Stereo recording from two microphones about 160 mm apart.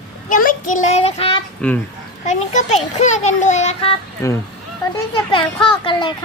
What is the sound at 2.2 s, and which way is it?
A child's voice, 50° left (ahead or behind).